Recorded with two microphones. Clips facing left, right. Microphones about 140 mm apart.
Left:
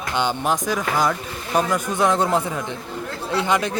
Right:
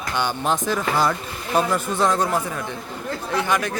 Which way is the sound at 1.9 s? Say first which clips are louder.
Left 1 dB; 20° left (ahead or behind).